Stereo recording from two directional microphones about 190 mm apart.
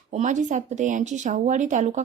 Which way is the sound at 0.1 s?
40° right (ahead or behind).